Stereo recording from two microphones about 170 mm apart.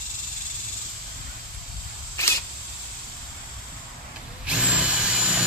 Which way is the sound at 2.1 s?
15° left (ahead or behind).